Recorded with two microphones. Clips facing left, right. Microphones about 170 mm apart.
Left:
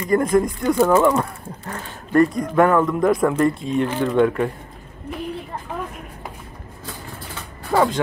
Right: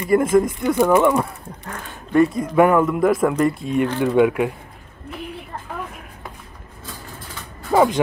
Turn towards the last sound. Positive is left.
turn(degrees=-20)  # may be behind; listen again after turning